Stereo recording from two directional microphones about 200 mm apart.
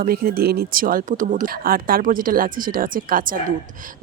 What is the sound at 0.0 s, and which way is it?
Speech, 50° right (ahead or behind).